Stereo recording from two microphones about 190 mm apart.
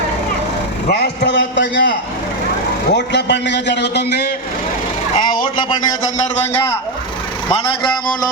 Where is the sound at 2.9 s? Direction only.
65° left (ahead or behind).